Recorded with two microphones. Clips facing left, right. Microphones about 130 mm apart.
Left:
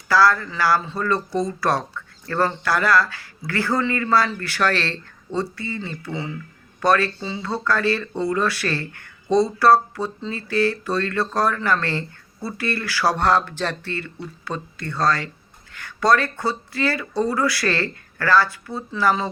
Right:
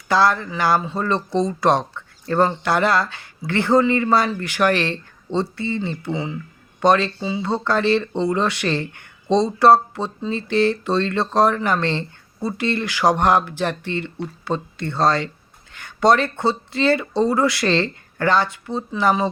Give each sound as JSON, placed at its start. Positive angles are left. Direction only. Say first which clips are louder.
{"t": 0.1, "sound": "speech", "louder": "even", "side_deg": -20}